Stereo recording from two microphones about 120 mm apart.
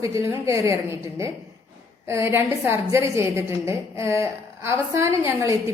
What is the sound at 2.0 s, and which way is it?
A woman's voice, 20° right (ahead or behind).